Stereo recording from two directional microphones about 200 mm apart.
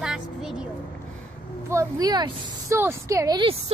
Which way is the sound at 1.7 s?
15° right (ahead or behind).